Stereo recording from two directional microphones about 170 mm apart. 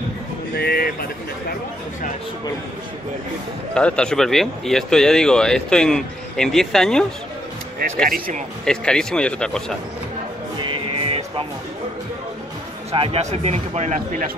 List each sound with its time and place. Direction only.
0.6 s a sound: 65° left (ahead or behind)
3.7 s speech: 5° left (ahead or behind)
8.6 s speech: 5° left (ahead or behind)
10.6 s music: 30° right (ahead or behind)
12.9 s speech: 35° right (ahead or behind); by 14.3 s 50° right (ahead or behind)